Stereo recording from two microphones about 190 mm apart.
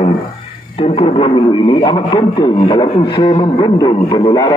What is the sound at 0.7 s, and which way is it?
A man's voice, 30° left (ahead or behind).